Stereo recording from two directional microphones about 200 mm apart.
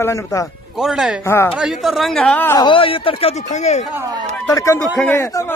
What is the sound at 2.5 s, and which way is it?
Speech, 25° left (ahead or behind).